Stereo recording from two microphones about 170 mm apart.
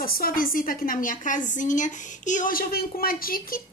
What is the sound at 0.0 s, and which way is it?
Speech, 60° left (ahead or behind).